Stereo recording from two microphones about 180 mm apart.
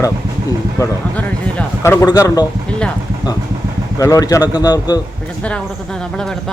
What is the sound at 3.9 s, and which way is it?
Speech, 20° left (ahead or behind).